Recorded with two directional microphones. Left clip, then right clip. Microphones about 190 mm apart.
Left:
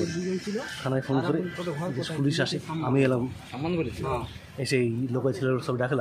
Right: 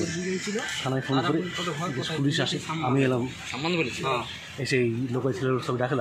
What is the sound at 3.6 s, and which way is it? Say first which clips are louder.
Speech: right 2 dB; 50° left (ahead or behind).